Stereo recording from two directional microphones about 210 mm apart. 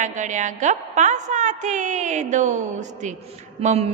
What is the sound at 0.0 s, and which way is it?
A woman's voice, 35° right (ahead or behind).